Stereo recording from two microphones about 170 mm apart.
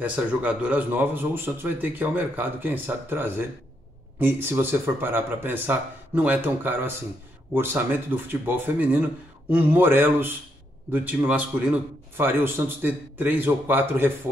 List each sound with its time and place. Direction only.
0.0 s speech: 10° right (ahead or behind)